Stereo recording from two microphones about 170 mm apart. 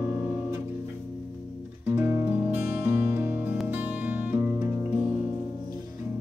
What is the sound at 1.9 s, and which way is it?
Music, 15° right (ahead or behind).